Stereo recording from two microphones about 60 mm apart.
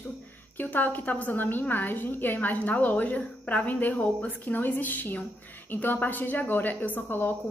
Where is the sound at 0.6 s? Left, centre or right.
Left.